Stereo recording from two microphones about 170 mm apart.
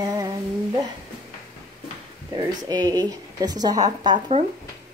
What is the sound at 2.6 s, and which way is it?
A woman's voice, 20° right (ahead or behind).